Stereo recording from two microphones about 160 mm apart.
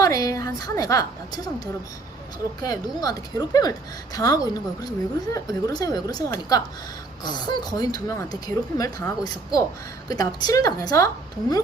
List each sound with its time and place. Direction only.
0.0 s a woman's voice: 20° left (ahead or behind)